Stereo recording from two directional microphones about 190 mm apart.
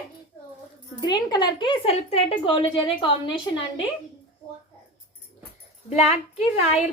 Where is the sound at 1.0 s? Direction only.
20° left (ahead or behind).